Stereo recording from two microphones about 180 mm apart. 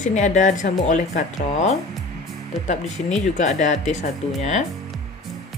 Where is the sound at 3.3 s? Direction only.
40° left (ahead or behind).